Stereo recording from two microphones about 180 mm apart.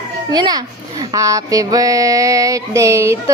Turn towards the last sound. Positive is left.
turn(degrees=-15)  # may be behind; listen again after turning